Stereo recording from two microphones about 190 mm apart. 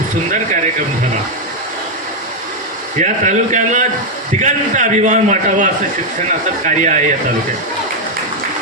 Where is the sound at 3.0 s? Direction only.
40° right (ahead or behind).